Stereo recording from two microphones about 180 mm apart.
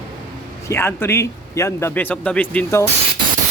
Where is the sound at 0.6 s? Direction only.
15° left (ahead or behind).